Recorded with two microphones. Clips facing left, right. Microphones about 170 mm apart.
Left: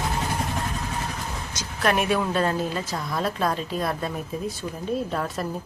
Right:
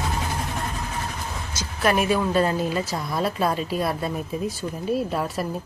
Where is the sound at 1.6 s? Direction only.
Centre (ahead or behind).